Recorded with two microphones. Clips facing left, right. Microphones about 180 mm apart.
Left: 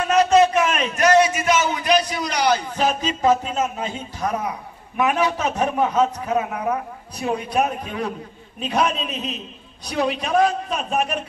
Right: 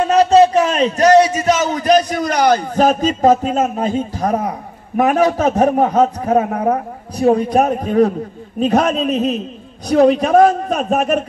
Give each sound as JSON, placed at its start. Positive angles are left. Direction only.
{"t": 0.0, "sound": "speech", "side_deg": -30}